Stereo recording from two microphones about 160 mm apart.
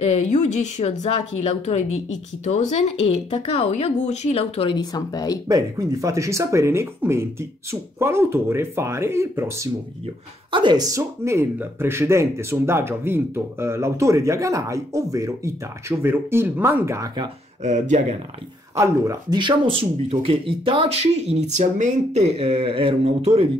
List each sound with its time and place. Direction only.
0.3 s speech: 45° left (ahead or behind)
4.7 s speech: 25° left (ahead or behind)
5.5 s speech: 20° right (ahead or behind)
10.5 s speech: 30° right (ahead or behind)
17.6 s speech: 45° right (ahead or behind)
18.8 s speech: 25° right (ahead or behind)